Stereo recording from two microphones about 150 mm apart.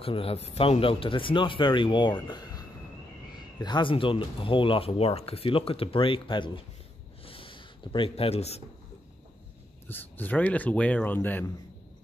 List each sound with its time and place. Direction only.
0.0 s speech: 40° left (ahead or behind)
3.6 s speech: 30° left (ahead or behind)
7.2 s a sound: 35° left (ahead or behind)
9.8 s speech: 10° left (ahead or behind)